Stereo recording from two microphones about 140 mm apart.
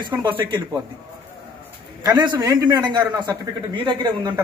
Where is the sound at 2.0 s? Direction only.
30° right (ahead or behind).